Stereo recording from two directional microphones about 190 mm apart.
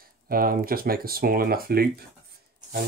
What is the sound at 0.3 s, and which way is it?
Speech, 50° right (ahead or behind).